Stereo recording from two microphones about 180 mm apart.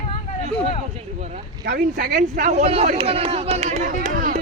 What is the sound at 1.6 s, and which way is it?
Speech, 50° right (ahead or behind).